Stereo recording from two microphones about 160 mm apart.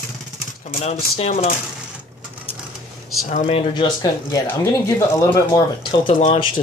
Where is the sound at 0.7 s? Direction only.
40° left (ahead or behind).